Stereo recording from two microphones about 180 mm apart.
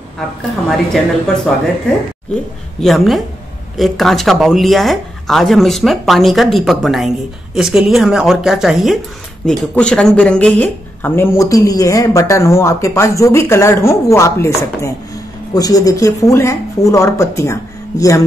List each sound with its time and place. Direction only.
0.7 s speech: centre (ahead or behind)
2.8 s speech: centre (ahead or behind); by 18.2 s 20° left (ahead or behind)